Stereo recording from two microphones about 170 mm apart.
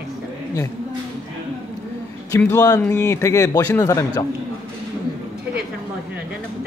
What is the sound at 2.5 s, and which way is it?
Speech, 15° left (ahead or behind).